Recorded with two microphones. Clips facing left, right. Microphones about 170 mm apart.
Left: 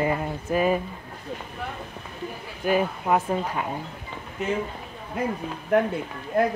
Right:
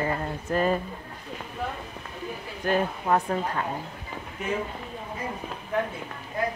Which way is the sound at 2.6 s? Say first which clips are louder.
Left 2 dB; 10° left (ahead or behind).